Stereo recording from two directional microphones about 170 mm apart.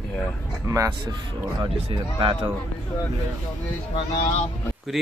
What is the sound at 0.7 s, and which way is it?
A man's voice, 20° right (ahead or behind).